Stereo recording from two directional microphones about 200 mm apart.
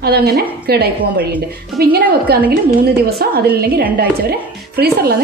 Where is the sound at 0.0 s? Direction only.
50° right (ahead or behind).